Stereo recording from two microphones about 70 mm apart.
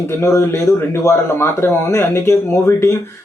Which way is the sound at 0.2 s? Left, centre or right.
Left.